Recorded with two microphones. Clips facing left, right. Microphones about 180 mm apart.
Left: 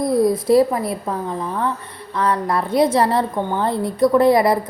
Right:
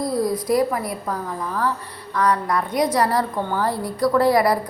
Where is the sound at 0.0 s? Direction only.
25° left (ahead or behind).